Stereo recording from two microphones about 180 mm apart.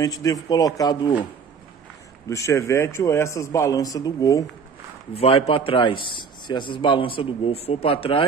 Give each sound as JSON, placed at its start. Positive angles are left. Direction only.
{"t": 0.0, "sound": "a man's voice", "side_deg": 20}
{"t": 2.2, "sound": "a man's voice", "side_deg": 15}
{"t": 5.1, "sound": "a man's voice", "side_deg": 30}